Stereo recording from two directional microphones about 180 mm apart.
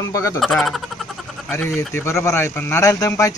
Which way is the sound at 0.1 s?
15° left (ahead or behind).